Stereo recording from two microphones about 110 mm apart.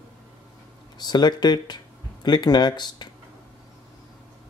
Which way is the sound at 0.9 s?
40° left (ahead or behind).